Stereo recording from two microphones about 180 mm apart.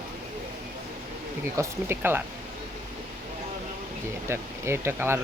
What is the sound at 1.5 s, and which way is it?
Speech, 15° right (ahead or behind).